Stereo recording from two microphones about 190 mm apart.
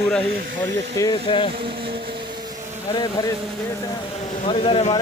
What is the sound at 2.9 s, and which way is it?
Speech, 20° left (ahead or behind).